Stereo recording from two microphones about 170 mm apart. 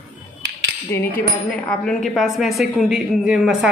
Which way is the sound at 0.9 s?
10° left (ahead or behind).